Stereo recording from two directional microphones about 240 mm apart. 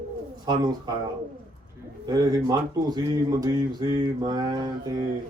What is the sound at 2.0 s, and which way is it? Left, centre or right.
Speech, centre.